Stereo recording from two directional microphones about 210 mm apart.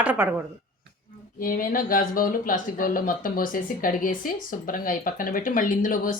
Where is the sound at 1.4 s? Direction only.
40° left (ahead or behind).